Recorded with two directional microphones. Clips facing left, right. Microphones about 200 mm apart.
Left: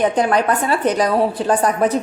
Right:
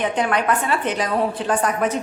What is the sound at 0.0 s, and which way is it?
Speech, 35° left (ahead or behind).